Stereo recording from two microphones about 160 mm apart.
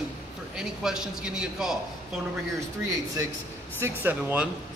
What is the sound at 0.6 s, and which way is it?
A man's voice, 5° right (ahead or behind).